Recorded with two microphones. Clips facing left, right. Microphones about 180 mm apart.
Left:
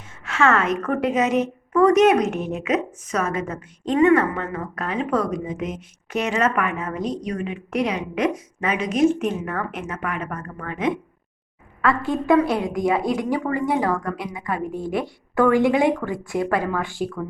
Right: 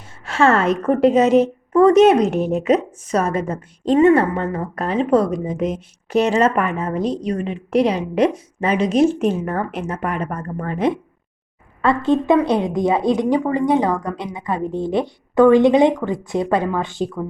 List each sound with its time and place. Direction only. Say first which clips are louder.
0.3 s a woman's voice: right 4 dB; 30° right (ahead or behind)
11.8 s a woman's voice: right 5 dB; 25° right (ahead or behind)